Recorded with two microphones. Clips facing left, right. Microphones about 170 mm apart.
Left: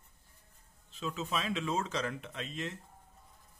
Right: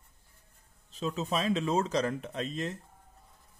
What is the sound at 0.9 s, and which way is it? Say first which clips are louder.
A man's voice: right 5 dB; 35° right (ahead or behind).